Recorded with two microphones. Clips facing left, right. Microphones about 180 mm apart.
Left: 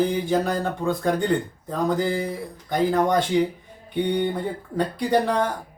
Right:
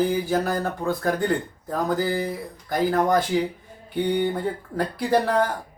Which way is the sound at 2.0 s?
5° right (ahead or behind).